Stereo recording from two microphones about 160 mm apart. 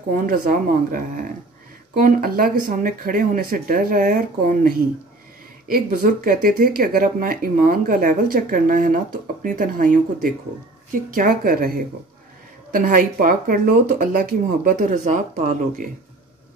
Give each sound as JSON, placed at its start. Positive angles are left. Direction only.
{"t": 0.1, "sound": "speech", "side_deg": -65}